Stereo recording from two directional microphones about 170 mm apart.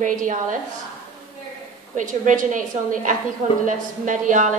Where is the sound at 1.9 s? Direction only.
50° right (ahead or behind).